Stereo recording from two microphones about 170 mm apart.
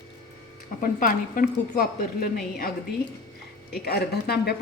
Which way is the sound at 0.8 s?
50° left (ahead or behind).